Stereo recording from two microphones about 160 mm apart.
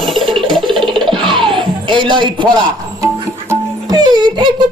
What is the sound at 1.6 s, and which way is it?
Speech, 30° right (ahead or behind).